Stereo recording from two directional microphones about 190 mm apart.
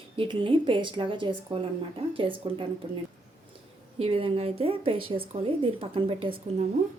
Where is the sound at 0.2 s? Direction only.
25° right (ahead or behind).